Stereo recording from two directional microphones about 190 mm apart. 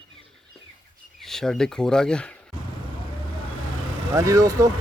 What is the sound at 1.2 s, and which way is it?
Speech, centre (ahead or behind).